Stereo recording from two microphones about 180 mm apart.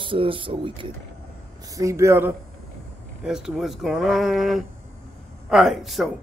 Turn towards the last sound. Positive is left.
turn(degrees=0)  # may be behind; listen again after turning